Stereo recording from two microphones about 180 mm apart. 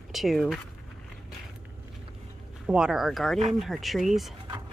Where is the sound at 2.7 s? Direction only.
5° right (ahead or behind).